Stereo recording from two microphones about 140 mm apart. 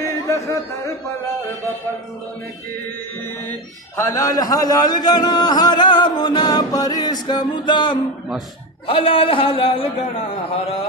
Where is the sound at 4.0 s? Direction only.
25° left (ahead or behind).